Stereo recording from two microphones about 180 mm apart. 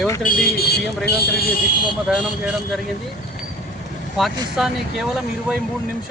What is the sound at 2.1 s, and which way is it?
Speech, 5° right (ahead or behind).